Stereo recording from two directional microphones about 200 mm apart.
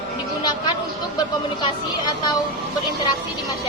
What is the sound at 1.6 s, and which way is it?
Speech, 20° left (ahead or behind).